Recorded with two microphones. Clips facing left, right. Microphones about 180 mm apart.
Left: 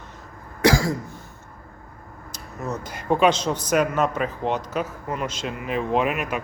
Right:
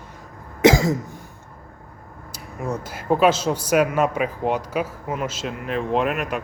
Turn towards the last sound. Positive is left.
turn(degrees=0)  # may be behind; listen again after turning